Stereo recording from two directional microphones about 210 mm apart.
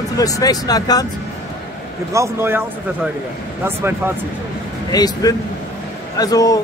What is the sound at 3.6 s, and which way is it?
Speech, 10° right (ahead or behind).